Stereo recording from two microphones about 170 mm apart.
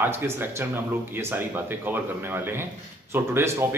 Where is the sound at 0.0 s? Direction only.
15° right (ahead or behind).